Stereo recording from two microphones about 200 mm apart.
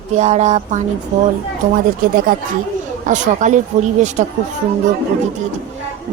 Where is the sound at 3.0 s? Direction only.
40° right (ahead or behind).